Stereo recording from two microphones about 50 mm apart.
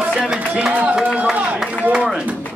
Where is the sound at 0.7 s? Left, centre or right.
Right.